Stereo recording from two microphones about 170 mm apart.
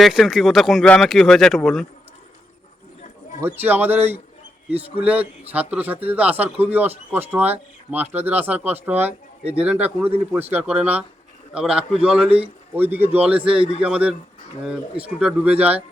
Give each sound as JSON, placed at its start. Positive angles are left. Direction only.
{"t": 0.0, "sound": "speech", "side_deg": 0}
{"t": 3.4, "sound": "speech", "side_deg": -10}
{"t": 13.0, "sound": "a man's voice", "side_deg": -40}
{"t": 13.8, "sound": "speech", "side_deg": -5}